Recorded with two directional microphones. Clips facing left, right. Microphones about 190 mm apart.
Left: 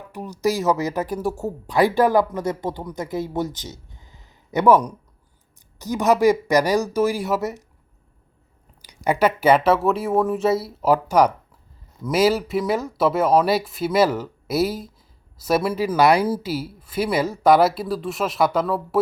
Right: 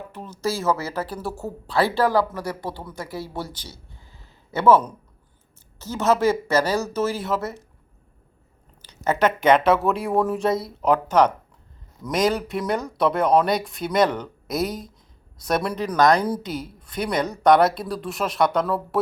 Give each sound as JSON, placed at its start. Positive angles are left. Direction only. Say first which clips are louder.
{"t": 0.1, "sound": "speech", "louder": "left 5 dB", "side_deg": 15}
{"t": 8.8, "sound": "speech", "louder": "left 2 dB", "side_deg": 10}